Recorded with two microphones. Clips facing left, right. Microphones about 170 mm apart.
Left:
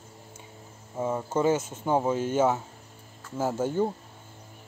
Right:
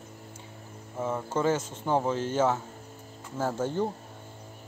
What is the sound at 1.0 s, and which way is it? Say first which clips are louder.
Speech: left 2 dB; 10° left (ahead or behind).